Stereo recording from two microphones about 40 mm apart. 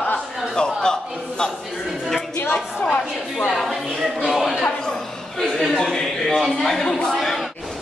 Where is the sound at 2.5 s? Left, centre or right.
Left.